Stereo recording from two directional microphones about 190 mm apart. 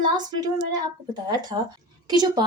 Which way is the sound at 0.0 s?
20° right (ahead or behind).